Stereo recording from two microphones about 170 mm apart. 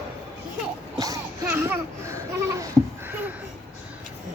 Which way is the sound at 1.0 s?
15° right (ahead or behind).